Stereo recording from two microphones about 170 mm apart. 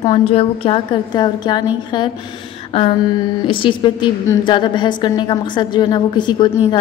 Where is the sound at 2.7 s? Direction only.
35° left (ahead or behind).